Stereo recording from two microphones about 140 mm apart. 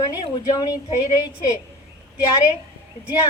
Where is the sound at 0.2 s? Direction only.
25° left (ahead or behind).